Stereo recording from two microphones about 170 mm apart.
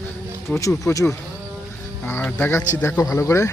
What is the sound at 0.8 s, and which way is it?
Speech, 20° left (ahead or behind).